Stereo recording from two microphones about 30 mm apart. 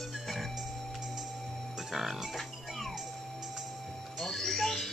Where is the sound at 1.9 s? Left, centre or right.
Centre.